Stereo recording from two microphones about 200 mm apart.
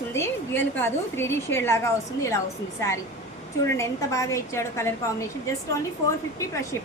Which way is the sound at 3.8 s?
15° left (ahead or behind).